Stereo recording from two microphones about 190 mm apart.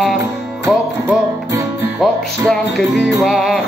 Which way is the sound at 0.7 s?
10° right (ahead or behind).